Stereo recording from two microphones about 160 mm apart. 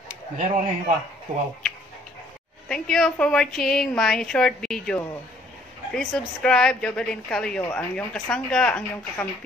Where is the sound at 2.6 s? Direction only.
5° left (ahead or behind).